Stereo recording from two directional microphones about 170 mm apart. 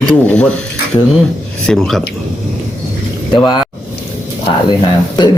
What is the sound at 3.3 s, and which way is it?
Speech, 25° left (ahead or behind).